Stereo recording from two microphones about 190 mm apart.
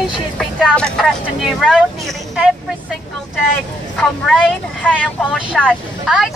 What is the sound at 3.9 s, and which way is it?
Speech, 5° left (ahead or behind).